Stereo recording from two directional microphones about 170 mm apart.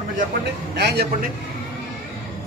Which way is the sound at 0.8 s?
75° right (ahead or behind).